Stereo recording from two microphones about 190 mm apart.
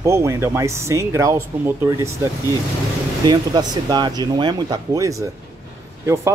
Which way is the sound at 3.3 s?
20° right (ahead or behind).